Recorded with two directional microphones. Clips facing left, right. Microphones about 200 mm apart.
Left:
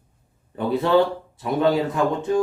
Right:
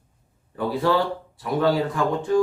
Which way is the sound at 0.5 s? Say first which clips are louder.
Left 3 dB; 20° left (ahead or behind).